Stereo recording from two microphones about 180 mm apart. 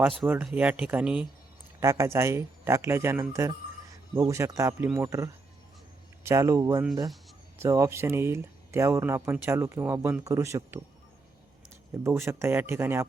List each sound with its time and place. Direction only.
0.2 s speech: 5° right (ahead or behind)
12.0 s speech: 15° right (ahead or behind)